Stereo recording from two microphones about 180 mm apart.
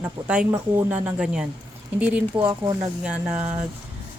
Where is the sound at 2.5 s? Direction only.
25° right (ahead or behind).